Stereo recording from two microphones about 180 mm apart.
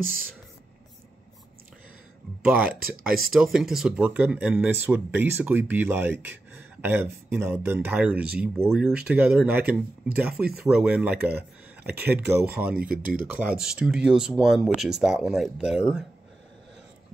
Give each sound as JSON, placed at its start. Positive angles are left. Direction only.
{"t": 2.4, "sound": "speech", "side_deg": -5}
{"t": 12.7, "sound": "speech", "side_deg": -55}
{"t": 13.3, "sound": "speech", "side_deg": -10}